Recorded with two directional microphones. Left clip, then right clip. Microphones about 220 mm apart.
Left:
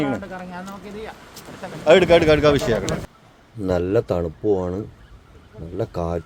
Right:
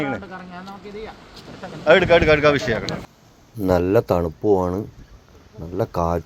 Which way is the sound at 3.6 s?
10° right (ahead or behind).